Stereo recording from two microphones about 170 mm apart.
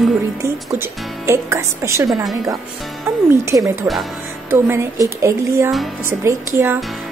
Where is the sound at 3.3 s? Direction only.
15° right (ahead or behind).